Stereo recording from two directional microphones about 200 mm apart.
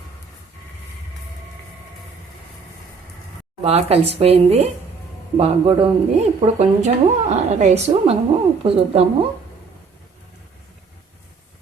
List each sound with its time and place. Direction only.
3.6 s speech: 30° right (ahead or behind)